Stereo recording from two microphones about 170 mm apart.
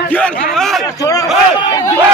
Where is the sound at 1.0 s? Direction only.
20° left (ahead or behind).